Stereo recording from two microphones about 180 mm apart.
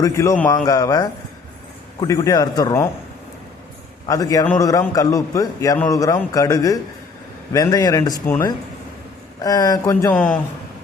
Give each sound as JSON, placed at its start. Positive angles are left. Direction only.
{"t": 0.0, "sound": "a man's voice", "side_deg": 15}
{"t": 4.0, "sound": "a man's voice", "side_deg": 20}